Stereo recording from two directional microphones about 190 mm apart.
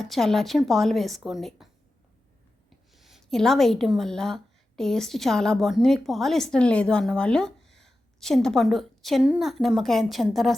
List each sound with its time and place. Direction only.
0.0 s a woman's voice: centre (ahead or behind)
2.9 s a woman's voice: centre (ahead or behind)